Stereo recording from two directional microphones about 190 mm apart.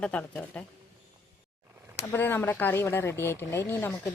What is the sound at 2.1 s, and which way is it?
A woman's voice, 10° left (ahead or behind).